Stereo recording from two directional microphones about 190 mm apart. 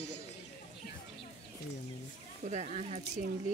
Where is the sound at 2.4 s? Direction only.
35° right (ahead or behind).